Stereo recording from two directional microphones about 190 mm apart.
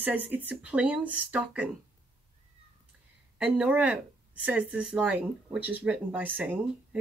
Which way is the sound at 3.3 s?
5° right (ahead or behind).